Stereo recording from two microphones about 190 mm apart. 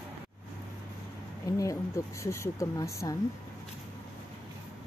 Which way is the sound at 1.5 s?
20° left (ahead or behind).